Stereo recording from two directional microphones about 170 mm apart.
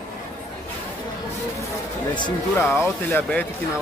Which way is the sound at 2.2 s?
25° left (ahead or behind).